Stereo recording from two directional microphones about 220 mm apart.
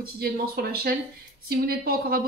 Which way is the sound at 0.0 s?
45° right (ahead or behind).